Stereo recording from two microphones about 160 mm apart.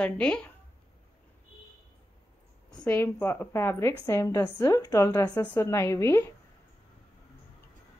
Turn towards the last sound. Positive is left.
turn(degrees=15)  # may be behind; listen again after turning